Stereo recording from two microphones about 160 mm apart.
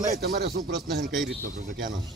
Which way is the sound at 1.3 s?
65° right (ahead or behind).